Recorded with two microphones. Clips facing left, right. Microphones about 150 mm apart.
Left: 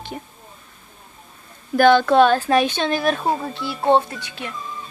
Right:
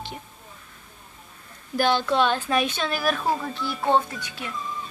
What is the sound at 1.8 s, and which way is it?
Speech, 55° left (ahead or behind).